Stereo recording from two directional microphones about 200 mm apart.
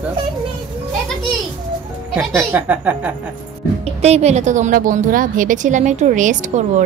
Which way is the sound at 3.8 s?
30° right (ahead or behind).